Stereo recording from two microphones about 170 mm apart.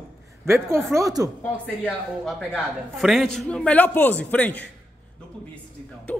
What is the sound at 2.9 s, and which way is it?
A man's voice, centre (ahead or behind).